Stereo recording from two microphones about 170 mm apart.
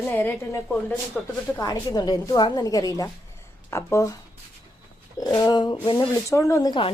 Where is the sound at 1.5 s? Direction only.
20° left (ahead or behind).